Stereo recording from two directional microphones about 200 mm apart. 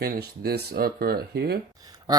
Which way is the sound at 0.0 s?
50° right (ahead or behind).